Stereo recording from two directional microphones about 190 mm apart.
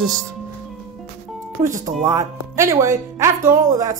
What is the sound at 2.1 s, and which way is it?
Speech, 15° right (ahead or behind).